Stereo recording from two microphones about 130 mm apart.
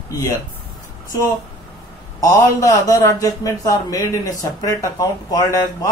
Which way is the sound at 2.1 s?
30° left (ahead or behind).